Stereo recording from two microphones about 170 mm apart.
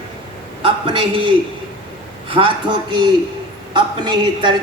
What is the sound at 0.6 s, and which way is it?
A woman's voice, 30° right (ahead or behind).